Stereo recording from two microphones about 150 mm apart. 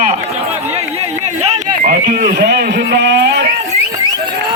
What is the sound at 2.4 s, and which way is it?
Speech, 90° right.